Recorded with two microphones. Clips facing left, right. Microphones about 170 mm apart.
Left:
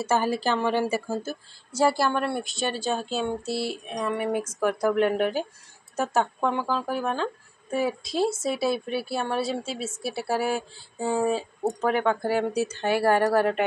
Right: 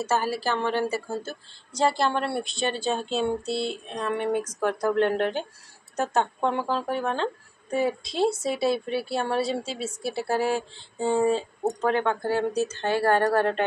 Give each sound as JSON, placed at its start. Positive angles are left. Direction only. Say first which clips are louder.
{"t": 0.0, "sound": "speech", "louder": "left 2 dB", "side_deg": 15}
{"t": 2.0, "sound": "a woman's voice", "louder": "even", "side_deg": -30}
{"t": 2.4, "sound": "a woman's voice", "louder": "right 1 dB", "side_deg": 0}